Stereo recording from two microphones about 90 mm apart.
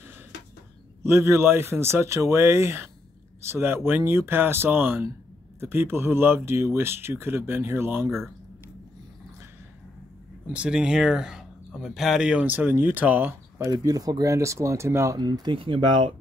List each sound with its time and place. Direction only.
1.0 s speech: 30° right (ahead or behind)
10.5 s speech: 10° right (ahead or behind)
13.7 s speech: 45° right (ahead or behind)
15.1 s speech: 55° right (ahead or behind)